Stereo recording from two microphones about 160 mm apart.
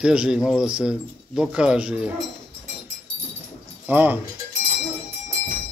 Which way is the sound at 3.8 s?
10° right (ahead or behind).